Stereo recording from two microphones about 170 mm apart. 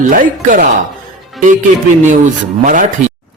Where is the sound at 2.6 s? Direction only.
50° right (ahead or behind).